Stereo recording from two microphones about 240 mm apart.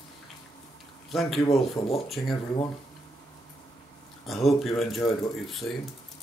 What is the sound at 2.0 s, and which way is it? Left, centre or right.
Speech, centre.